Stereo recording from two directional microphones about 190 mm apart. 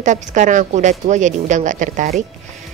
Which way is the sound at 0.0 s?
40° right (ahead or behind).